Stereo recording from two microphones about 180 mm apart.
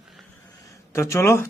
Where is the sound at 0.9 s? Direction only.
15° left (ahead or behind).